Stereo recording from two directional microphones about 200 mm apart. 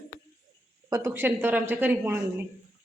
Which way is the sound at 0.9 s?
15° right (ahead or behind).